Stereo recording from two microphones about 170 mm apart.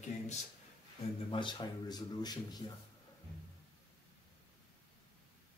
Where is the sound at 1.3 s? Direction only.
25° left (ahead or behind).